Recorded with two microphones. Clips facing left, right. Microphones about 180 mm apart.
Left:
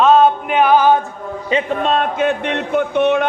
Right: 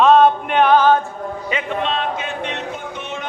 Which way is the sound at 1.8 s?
50° left (ahead or behind).